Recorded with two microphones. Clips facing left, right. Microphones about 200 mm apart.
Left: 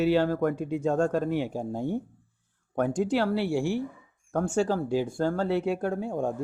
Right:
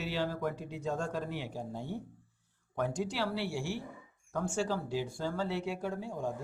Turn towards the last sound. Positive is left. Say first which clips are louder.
# left 8 dB
turn(degrees=55)  # may be behind; listen again after turning